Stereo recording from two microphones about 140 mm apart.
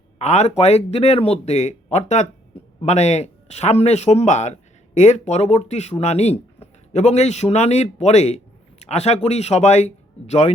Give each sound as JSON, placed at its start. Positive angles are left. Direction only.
{"t": 0.2, "sound": "speech", "side_deg": 50}